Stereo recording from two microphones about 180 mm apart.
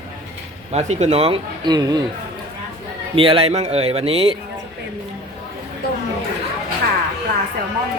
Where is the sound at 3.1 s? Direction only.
30° right (ahead or behind).